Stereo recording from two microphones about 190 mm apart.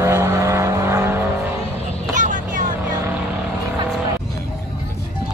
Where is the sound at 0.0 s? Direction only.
15° right (ahead or behind).